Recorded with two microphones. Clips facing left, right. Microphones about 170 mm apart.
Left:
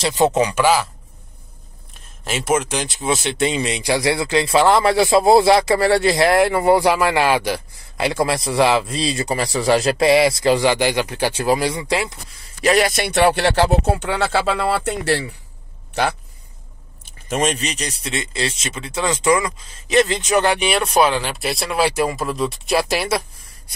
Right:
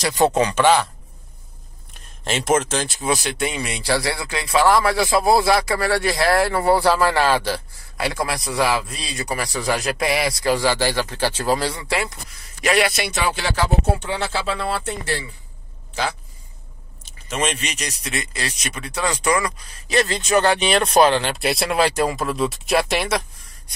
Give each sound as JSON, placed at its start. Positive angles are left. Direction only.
{"t": 0.0, "sound": "speech", "side_deg": 20}
{"t": 2.2, "sound": "speech", "side_deg": 5}
{"t": 12.6, "sound": "speech", "side_deg": 40}
{"t": 14.9, "sound": "a man's voice", "side_deg": 70}
{"t": 17.0, "sound": "speech", "side_deg": 45}